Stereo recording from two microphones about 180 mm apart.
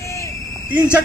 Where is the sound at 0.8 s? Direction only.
15° left (ahead or behind).